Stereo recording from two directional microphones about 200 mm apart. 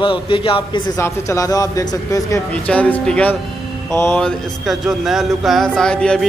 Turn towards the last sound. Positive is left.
turn(degrees=5)  # may be behind; listen again after turning